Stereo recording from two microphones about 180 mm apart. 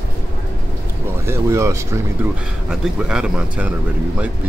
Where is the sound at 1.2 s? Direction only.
15° right (ahead or behind).